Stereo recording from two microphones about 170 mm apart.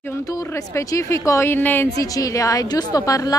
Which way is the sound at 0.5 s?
15° left (ahead or behind).